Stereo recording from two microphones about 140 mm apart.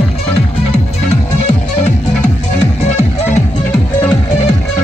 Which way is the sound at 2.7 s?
50° left (ahead or behind).